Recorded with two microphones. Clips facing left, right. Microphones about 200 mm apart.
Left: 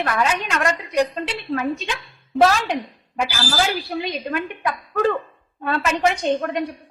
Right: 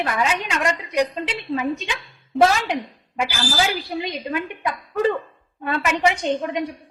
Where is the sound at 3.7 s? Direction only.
15° right (ahead or behind).